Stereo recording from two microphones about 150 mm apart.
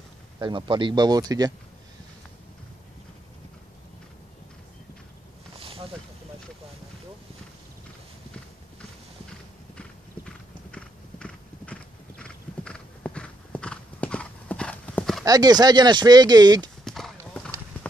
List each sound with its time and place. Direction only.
0.4 s speech: 30° right (ahead or behind)
5.6 s a sound: 35° right (ahead or behind)
9.8 s clip-clop: 5° left (ahead or behind)
15.2 s speech: 25° right (ahead or behind)
16.8 s clip-clop: centre (ahead or behind)